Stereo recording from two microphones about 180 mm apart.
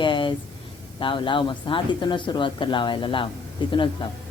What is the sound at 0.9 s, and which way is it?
Speech, 30° left (ahead or behind).